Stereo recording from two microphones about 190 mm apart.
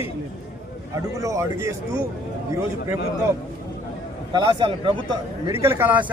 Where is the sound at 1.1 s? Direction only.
15° right (ahead or behind).